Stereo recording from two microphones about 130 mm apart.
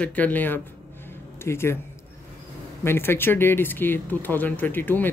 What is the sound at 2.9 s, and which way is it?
Speech, 15° left (ahead or behind).